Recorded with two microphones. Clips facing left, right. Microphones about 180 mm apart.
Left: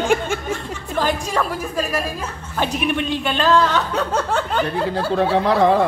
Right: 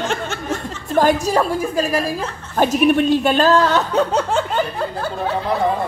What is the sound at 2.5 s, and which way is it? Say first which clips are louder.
Speech: right 7 dB; 45° right (ahead or behind).